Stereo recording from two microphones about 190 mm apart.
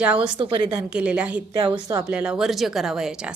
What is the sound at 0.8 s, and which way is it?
Speech, 5° right (ahead or behind).